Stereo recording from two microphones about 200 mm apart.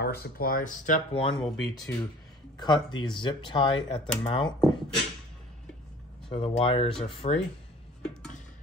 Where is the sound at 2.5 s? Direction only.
20° left (ahead or behind).